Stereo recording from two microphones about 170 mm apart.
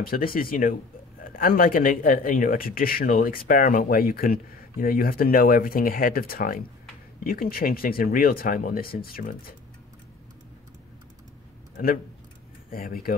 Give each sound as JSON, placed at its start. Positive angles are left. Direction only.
{"t": 0.0, "sound": "speech", "side_deg": 60}
{"t": 11.7, "sound": "a man's voice", "side_deg": 55}